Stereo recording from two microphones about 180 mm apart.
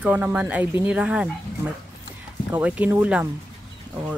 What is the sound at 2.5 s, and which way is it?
Speech, 5° right (ahead or behind).